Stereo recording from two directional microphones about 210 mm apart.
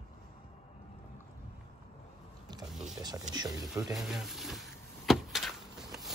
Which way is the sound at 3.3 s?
20° right (ahead or behind).